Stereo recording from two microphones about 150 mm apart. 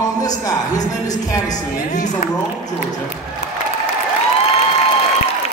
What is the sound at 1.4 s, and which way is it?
Speech, 55° left (ahead or behind).